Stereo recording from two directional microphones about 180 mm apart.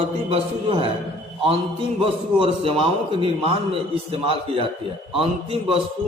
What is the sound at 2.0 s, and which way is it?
A man's voice, 30° right (ahead or behind).